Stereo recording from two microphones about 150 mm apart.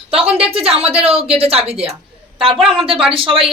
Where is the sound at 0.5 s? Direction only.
40° right (ahead or behind).